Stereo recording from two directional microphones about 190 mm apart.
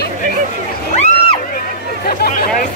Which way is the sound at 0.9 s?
35° left (ahead or behind).